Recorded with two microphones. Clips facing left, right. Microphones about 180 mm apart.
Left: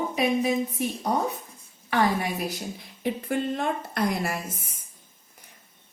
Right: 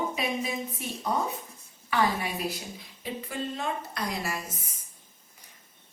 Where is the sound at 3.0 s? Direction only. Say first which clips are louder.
Left 7 dB; 60° left (ahead or behind).